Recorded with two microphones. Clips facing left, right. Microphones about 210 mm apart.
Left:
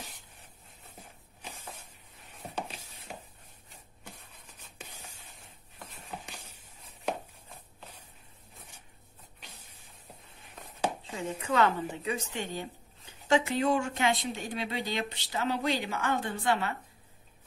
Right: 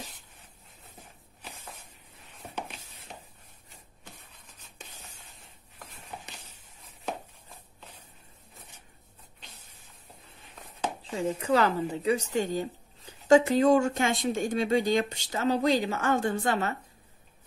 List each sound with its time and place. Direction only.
11.0 s a woman's voice: 35° right (ahead or behind)